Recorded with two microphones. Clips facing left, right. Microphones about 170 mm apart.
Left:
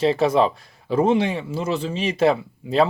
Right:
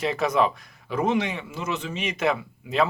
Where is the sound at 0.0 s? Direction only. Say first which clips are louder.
Left 5 dB; 30° left (ahead or behind).